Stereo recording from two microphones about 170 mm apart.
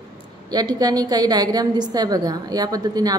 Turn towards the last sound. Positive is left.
turn(degrees=-25)  # may be behind; listen again after turning